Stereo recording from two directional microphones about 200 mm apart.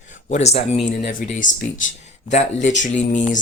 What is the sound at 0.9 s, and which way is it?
Speech, 45° left (ahead or behind).